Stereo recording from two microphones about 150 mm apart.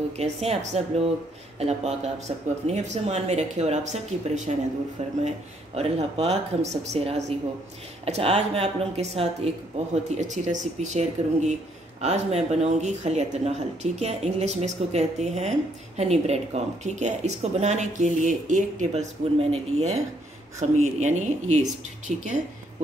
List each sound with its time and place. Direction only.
0.2 s speech: 45° right (ahead or behind)
5.8 s speech: 45° right (ahead or behind)